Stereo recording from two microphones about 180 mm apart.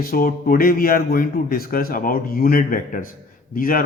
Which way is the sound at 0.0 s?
55° left (ahead or behind).